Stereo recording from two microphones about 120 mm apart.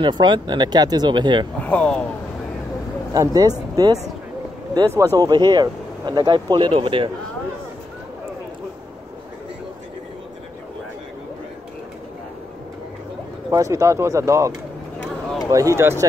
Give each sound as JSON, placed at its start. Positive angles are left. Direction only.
{"t": 0.0, "sound": "speech", "side_deg": -40}
{"t": 1.6, "sound": "speech", "side_deg": 10}
{"t": 3.1, "sound": "speech", "side_deg": -30}
{"t": 13.5, "sound": "speech", "side_deg": -25}
{"t": 15.0, "sound": "a sound", "side_deg": 5}
{"t": 15.5, "sound": "speech", "side_deg": -25}